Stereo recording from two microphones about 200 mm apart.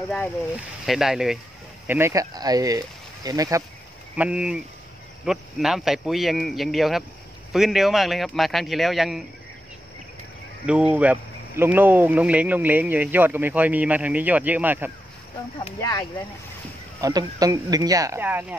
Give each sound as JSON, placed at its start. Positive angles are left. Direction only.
{"t": 0.8, "sound": "a man's voice", "side_deg": 0}
{"t": 4.2, "sound": "a man's voice", "side_deg": -5}
{"t": 10.7, "sound": "speech", "side_deg": -5}
{"t": 15.8, "sound": "speech", "side_deg": 15}
{"t": 17.0, "sound": "speech", "side_deg": -20}